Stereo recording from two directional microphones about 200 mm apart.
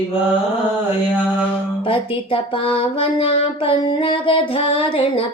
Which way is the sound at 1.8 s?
25° left (ahead or behind).